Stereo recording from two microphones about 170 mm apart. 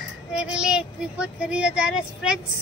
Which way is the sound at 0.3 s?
5° right (ahead or behind).